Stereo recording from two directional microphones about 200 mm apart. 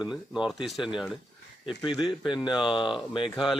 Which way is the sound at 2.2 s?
20° left (ahead or behind).